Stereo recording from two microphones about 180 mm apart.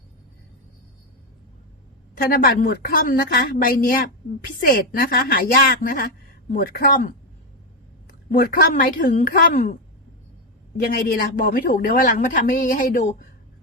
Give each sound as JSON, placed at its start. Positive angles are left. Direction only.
{"t": 2.1, "sound": "a woman's voice", "side_deg": 55}
{"t": 8.4, "sound": "a woman's voice", "side_deg": 55}
{"t": 10.8, "sound": "a man's voice", "side_deg": 55}